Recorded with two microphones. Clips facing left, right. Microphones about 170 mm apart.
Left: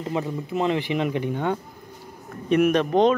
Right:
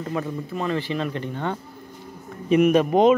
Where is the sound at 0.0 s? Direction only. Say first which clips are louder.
Left 1 dB; 20° left (ahead or behind).